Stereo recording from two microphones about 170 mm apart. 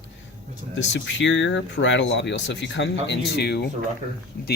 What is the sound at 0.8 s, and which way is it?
Speech, 90° left.